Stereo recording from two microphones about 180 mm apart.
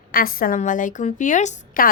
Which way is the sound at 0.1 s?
55° left (ahead or behind).